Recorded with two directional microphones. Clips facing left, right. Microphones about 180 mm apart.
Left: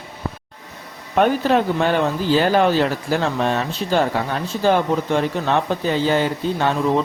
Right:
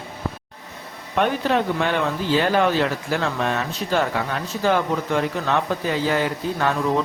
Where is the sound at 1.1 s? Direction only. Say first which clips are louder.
Left 4 dB; 40° left (ahead or behind).